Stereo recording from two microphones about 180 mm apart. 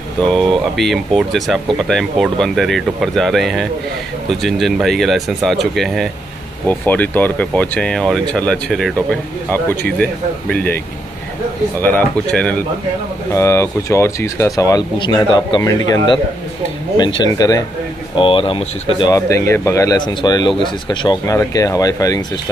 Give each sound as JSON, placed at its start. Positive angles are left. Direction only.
{"t": 0.3, "sound": "speech", "side_deg": 0}
{"t": 11.8, "sound": "speech", "side_deg": 10}
{"t": 17.2, "sound": "speech", "side_deg": 20}
{"t": 19.0, "sound": "speech", "side_deg": 20}